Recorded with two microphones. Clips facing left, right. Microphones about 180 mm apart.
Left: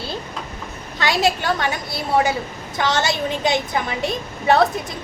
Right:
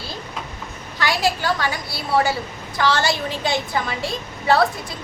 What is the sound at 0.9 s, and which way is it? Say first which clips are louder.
A woman's voice: left 2 dB; 20° left (ahead or behind).